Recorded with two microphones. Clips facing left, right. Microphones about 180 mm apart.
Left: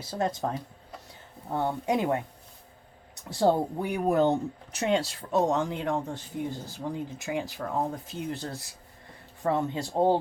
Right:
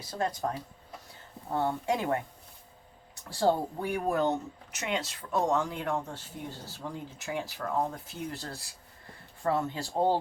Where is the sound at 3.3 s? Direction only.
20° left (ahead or behind).